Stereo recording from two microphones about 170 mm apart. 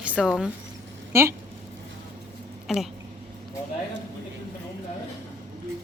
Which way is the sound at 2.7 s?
Centre (ahead or behind).